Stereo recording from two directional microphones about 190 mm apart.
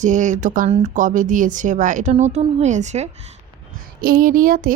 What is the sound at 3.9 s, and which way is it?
Speech, 50° right (ahead or behind).